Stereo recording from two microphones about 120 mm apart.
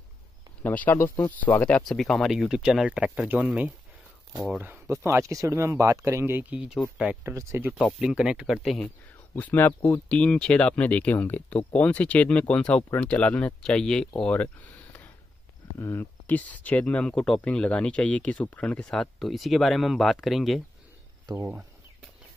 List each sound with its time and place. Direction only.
0.6 s speech: 15° left (ahead or behind)
1.8 s speech: centre (ahead or behind)
7.2 s speech: 20° right (ahead or behind)
7.7 s speech: 5° right (ahead or behind)
9.3 s speech: 20° left (ahead or behind); by 20.6 s centre (ahead or behind)